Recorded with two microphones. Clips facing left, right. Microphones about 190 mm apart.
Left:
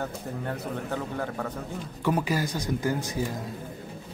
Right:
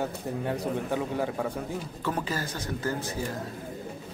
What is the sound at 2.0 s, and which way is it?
Speech, 10° left (ahead or behind).